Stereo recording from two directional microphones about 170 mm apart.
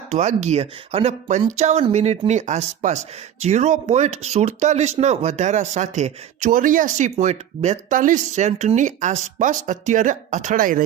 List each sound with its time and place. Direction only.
0.1 s speech: 40° right (ahead or behind)